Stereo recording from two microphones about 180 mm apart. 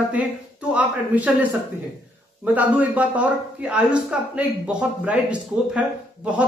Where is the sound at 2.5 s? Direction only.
10° right (ahead or behind).